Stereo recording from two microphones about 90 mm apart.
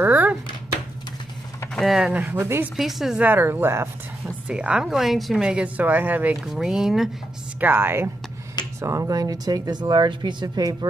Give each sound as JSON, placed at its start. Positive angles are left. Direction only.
{"t": 0.0, "sound": "a sound", "side_deg": -20}
{"t": 1.8, "sound": "a woman's voice", "side_deg": -5}
{"t": 2.4, "sound": "speech", "side_deg": -25}
{"t": 2.7, "sound": "speech", "side_deg": -5}
{"t": 3.2, "sound": "speech", "side_deg": -20}
{"t": 4.5, "sound": "a woman's voice", "side_deg": -10}
{"t": 6.4, "sound": "speech", "side_deg": -5}
{"t": 7.6, "sound": "speech", "side_deg": -25}